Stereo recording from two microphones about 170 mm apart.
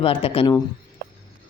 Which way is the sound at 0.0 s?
35° left (ahead or behind).